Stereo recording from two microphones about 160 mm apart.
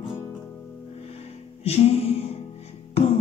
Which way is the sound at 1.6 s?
40° left (ahead or behind).